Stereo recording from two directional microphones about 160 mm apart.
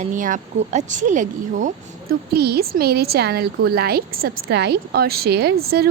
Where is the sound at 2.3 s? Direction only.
80° right.